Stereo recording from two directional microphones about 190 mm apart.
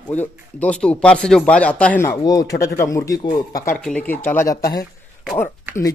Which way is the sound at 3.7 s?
10° left (ahead or behind).